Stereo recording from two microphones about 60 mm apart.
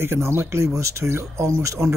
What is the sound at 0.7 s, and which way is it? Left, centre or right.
Speech, right.